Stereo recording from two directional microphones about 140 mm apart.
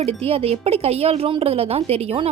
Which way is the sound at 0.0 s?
45° right (ahead or behind).